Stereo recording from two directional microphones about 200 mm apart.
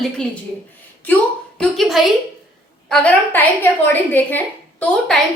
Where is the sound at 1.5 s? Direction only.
Centre (ahead or behind).